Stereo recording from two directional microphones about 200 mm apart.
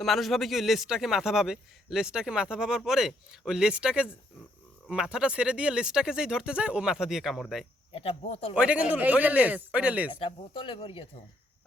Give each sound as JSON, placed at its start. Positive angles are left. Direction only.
{"t": 0.0, "sound": "a man's voice", "side_deg": 0}
{"t": 7.9, "sound": "speech", "side_deg": 30}
{"t": 8.5, "sound": "speech", "side_deg": -5}
{"t": 10.1, "sound": "speech", "side_deg": 25}